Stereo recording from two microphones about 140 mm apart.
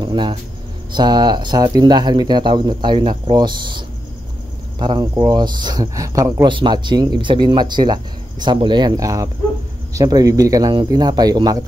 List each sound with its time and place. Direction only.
0.0 s speech: 35° right (ahead or behind)